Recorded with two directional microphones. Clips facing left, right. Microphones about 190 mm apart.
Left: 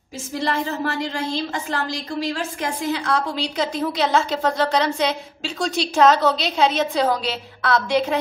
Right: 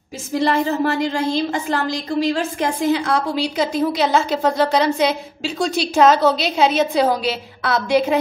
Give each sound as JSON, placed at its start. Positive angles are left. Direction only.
{"t": 0.4, "sound": "a woman's voice", "side_deg": -15}
{"t": 3.0, "sound": "a woman's voice", "side_deg": -10}